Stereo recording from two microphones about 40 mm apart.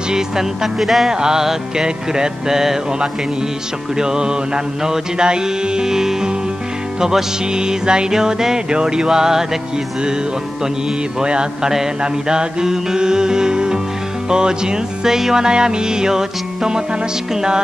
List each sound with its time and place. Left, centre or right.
0.1 s music: centre
1.1 s music: centre
3.9 s music: centre
11.1 s music: centre